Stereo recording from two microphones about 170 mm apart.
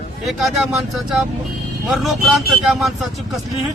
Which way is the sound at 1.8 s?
Centre (ahead or behind).